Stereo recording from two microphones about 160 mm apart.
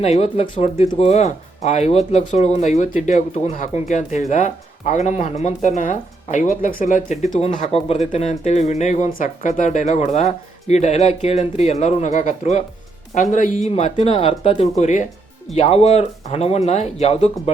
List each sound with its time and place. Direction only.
0.0 s speech: 40° left (ahead or behind)